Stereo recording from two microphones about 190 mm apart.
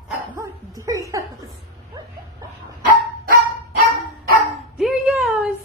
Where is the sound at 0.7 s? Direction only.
20° right (ahead or behind).